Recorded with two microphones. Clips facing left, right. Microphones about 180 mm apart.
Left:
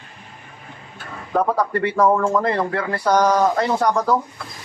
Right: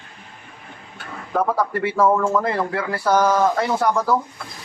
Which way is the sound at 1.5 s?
5° right (ahead or behind).